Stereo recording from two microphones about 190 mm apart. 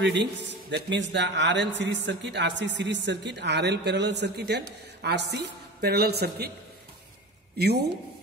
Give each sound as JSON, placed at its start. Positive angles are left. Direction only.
{"t": 0.0, "sound": "a man's voice", "side_deg": -65}
{"t": 7.5, "sound": "a man's voice", "side_deg": -55}